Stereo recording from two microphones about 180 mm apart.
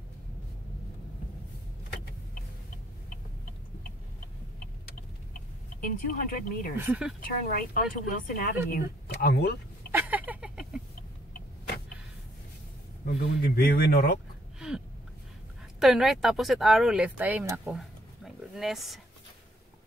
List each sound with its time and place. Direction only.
5.8 s speech: 50° left (ahead or behind)
6.9 s speech: 5° right (ahead or behind)
7.4 s speech: 50° left (ahead or behind)
9.1 s speech: 60° left (ahead or behind)
9.8 s a sound: 10° right (ahead or behind)
13.0 s speech: 50° left (ahead or behind)
15.8 s speech: centre (ahead or behind)